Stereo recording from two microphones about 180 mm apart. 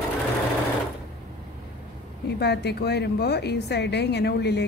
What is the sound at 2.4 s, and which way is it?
Speech, 65° left (ahead or behind).